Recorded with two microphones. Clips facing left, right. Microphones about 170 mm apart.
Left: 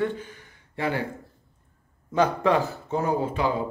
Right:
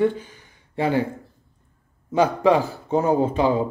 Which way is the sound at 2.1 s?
10° right (ahead or behind).